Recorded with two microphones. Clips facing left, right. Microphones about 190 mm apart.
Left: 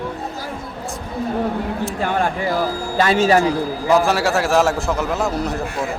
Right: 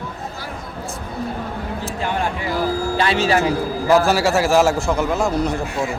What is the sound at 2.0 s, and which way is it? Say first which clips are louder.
Speech: left 2 dB; 50° left (ahead or behind).